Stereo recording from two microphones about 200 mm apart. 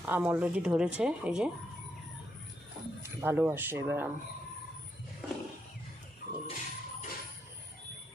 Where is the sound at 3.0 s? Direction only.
10° right (ahead or behind).